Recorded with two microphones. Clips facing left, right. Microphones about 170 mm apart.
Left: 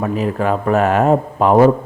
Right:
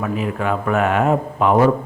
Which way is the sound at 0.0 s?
35° left (ahead or behind).